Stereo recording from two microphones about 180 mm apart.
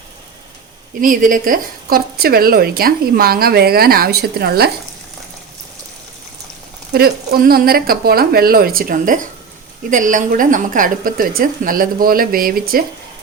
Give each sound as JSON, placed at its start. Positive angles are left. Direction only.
{"t": 1.0, "sound": "a woman's voice", "side_deg": -50}
{"t": 6.9, "sound": "a woman's voice", "side_deg": -60}